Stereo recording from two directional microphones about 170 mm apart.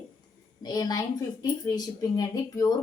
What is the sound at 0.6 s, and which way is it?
A woman's voice, 20° left (ahead or behind).